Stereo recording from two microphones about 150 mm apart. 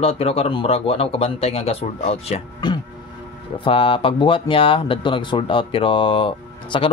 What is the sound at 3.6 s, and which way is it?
Speech, 35° left (ahead or behind).